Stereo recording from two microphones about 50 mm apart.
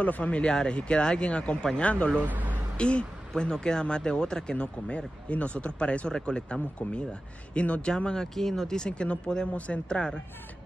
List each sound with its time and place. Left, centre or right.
0.0 s speech: left
2.1 s speech: right
2.8 s speech: left
7.9 s speech: centre